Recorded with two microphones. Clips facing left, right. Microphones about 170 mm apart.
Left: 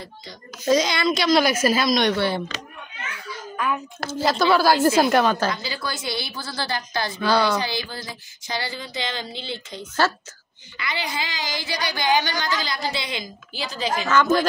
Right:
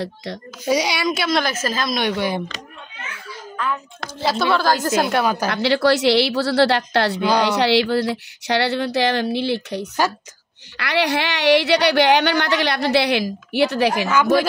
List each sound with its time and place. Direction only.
0.0 s speech: 80° right
0.7 s a woman's voice: 10° right (ahead or behind)
1.4 s a woman's voice: 10° left (ahead or behind)
1.9 s a woman's voice: 10° right (ahead or behind)
3.5 s a child's voice: 15° left (ahead or behind)
4.2 s speech: centre (ahead or behind)
5.0 s a woman's voice: 5° right (ahead or behind)
5.5 s speech: 75° right (ahead or behind)
7.2 s a woman's voice: 15° right (ahead or behind)
7.4 s speech: 70° right (ahead or behind)
14.0 s a woman's voice: 10° right (ahead or behind)